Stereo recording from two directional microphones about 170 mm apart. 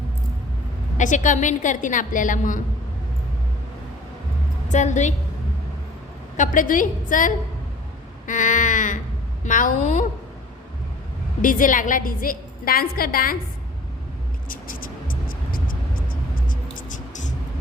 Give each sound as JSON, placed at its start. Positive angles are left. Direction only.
{"t": 0.9, "sound": "a woman's voice", "side_deg": 45}
{"t": 4.7, "sound": "a woman's voice", "side_deg": 45}
{"t": 6.3, "sound": "a woman's voice", "side_deg": 50}
{"t": 11.4, "sound": "a woman's voice", "side_deg": 50}
{"t": 14.5, "sound": "vehicle", "side_deg": 55}